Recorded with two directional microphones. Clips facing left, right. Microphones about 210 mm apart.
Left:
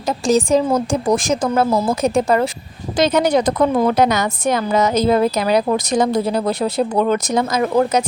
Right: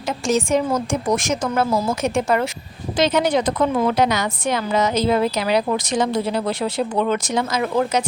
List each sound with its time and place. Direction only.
0.1 s a woman's voice: 35° left (ahead or behind)